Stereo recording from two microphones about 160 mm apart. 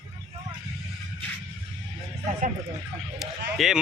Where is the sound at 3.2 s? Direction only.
Centre (ahead or behind).